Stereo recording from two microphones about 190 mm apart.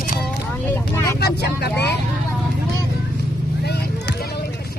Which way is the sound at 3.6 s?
60° left (ahead or behind).